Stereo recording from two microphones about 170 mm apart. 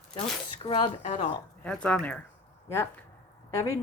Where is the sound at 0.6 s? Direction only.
30° left (ahead or behind).